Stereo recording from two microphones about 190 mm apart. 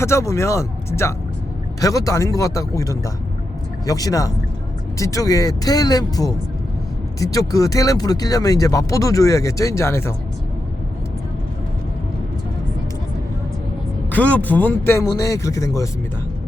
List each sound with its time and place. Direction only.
0.0 s speech: 15° left (ahead or behind)
14.1 s speech: 10° left (ahead or behind)